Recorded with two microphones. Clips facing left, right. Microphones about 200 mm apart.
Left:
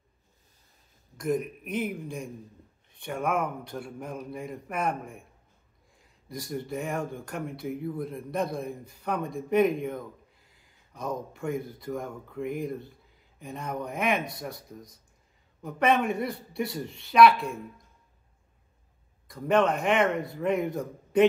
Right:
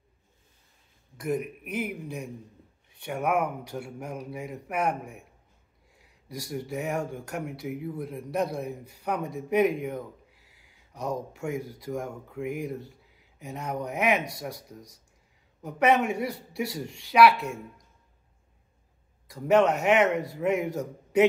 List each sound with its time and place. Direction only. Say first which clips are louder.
1.1 s a man's voice: left 1 dB; 10° right (ahead or behind)
5.9 s a sound: even; 70° right (ahead or behind)
6.3 s a man's voice: even; 10° right (ahead or behind)
10.3 s a sound: right 1 dB; 75° right (ahead or behind)
11.3 s a man's voice: even; 10° right (ahead or behind)
15.6 s a man's voice: right 1 dB; 10° right (ahead or behind)
19.2 s a man's voice: right 2 dB; 10° right (ahead or behind)